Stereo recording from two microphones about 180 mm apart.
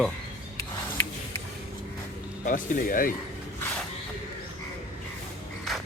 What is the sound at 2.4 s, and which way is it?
Speech, 50° left (ahead or behind).